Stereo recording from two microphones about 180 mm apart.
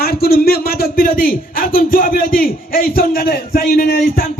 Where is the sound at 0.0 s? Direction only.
60° left (ahead or behind).